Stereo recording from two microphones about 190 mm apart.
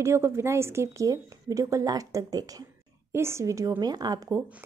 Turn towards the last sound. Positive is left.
turn(degrees=-10)  # may be behind; listen again after turning